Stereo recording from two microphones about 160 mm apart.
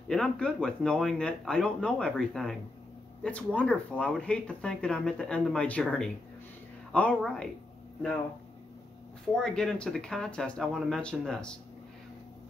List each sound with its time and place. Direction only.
0.1 s speech: 5° left (ahead or behind)
9.3 s speech: 5° left (ahead or behind)